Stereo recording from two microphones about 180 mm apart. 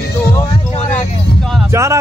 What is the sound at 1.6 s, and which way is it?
Music, 15° right (ahead or behind).